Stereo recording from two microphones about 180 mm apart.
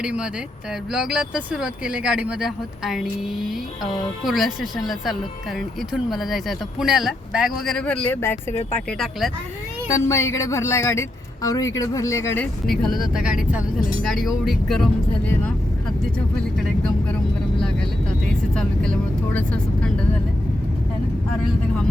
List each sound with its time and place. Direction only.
0.0 s speech: 5° right (ahead or behind); by 9.0 s 10° left (ahead or behind)
9.9 s music: 15° left (ahead or behind)
12.6 s speech: centre (ahead or behind)
18.5 s speech: 5° left (ahead or behind)